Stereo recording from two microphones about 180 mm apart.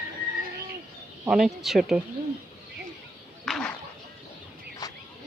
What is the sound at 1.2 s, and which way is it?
Speech, 5° right (ahead or behind).